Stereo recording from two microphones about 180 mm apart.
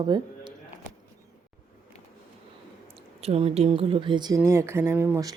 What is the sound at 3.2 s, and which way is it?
Speech, 35° right (ahead or behind).